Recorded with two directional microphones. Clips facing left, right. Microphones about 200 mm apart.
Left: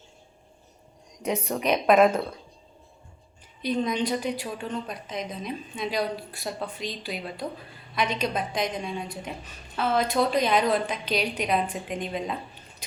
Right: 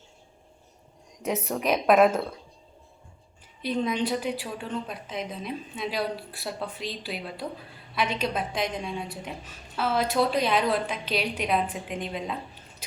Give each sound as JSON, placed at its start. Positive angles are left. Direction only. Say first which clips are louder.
{"t": 1.2, "sound": "a woman's voice", "louder": "left 1 dB", "side_deg": 0}
{"t": 3.6, "sound": "a woman's voice", "louder": "left 1 dB", "side_deg": -5}